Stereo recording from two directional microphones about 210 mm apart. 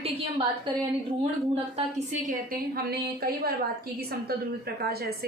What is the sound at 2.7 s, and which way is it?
A woman's voice, 45° right (ahead or behind).